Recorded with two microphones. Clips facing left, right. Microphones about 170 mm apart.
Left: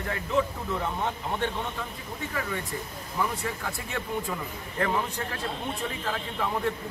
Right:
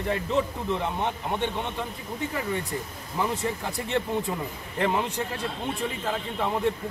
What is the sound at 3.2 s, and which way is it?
Speech, 25° right (ahead or behind).